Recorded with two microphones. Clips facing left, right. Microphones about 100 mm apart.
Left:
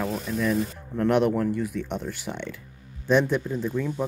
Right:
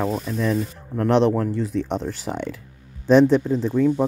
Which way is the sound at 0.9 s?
30° right (ahead or behind).